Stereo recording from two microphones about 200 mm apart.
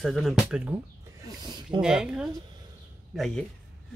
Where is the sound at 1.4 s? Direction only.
20° right (ahead or behind).